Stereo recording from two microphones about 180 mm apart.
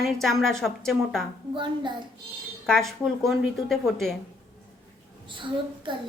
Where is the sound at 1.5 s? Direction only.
25° right (ahead or behind).